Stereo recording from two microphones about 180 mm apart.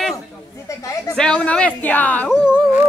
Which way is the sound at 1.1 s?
5° left (ahead or behind).